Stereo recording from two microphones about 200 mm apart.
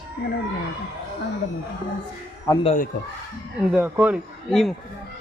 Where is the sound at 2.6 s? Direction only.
40° left (ahead or behind).